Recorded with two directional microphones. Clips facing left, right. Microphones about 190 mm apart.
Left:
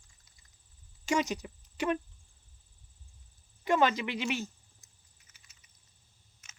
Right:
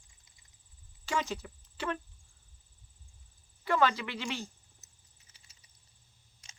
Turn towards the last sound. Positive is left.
turn(degrees=-30)  # may be behind; listen again after turning